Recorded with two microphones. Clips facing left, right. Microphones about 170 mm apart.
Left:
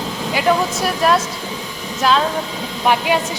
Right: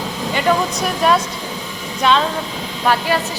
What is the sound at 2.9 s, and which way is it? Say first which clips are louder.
Speech: left 1 dB; 15° left (ahead or behind).